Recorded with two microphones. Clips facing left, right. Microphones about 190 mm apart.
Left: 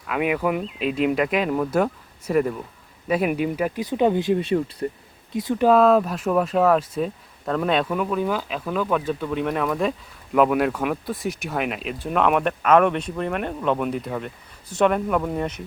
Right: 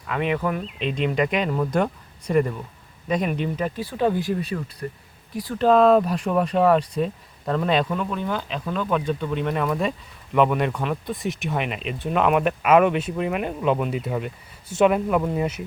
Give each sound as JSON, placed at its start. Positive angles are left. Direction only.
{"t": 0.1, "sound": "speech", "side_deg": 5}
{"t": 5.6, "sound": "speech", "side_deg": 5}